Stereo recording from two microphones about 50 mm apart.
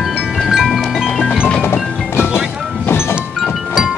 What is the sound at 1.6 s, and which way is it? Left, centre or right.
Music, left.